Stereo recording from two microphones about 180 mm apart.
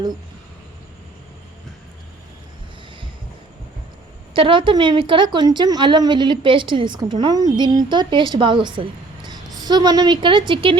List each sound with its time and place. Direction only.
4.4 s a woman's voice: 30° right (ahead or behind)